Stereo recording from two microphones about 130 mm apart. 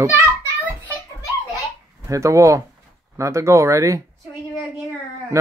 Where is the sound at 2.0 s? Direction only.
25° right (ahead or behind).